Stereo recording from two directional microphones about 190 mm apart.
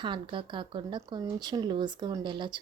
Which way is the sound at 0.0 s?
25° right (ahead or behind).